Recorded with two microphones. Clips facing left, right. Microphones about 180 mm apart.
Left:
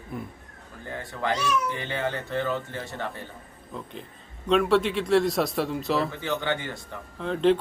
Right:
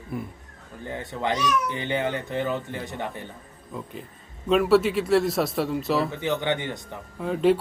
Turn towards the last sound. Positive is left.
turn(degrees=-5)  # may be behind; listen again after turning